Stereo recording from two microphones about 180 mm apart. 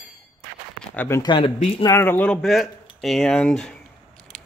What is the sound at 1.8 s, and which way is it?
Speech, 15° left (ahead or behind).